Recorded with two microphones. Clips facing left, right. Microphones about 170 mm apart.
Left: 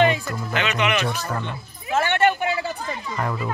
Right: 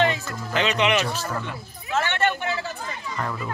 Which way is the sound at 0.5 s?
35° right (ahead or behind).